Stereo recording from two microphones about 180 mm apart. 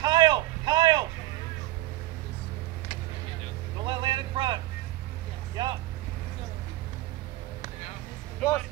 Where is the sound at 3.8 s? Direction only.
25° right (ahead or behind).